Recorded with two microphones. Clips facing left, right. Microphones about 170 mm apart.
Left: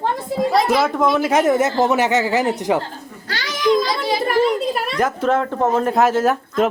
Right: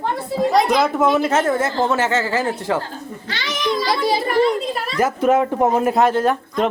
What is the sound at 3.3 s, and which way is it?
Children playing, 40° left (ahead or behind).